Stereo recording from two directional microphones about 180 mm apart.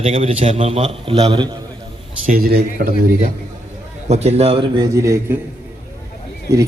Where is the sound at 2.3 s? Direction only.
55° right (ahead or behind).